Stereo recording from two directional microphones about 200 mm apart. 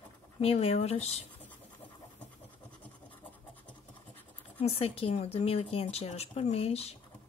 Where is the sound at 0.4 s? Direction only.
30° left (ahead or behind).